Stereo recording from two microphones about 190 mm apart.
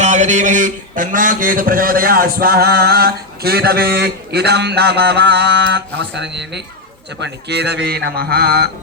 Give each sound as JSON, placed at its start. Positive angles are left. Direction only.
{"t": 0.0, "sound": "a man's voice", "side_deg": -40}